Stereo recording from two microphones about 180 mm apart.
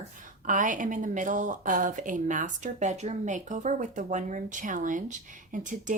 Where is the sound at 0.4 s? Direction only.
45° right (ahead or behind).